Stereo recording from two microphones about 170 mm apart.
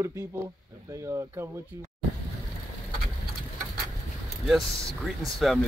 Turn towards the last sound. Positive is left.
turn(degrees=0)  # may be behind; listen again after turning